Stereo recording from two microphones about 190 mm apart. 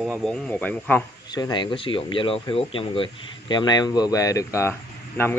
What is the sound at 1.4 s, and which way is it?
Speech, 20° left (ahead or behind).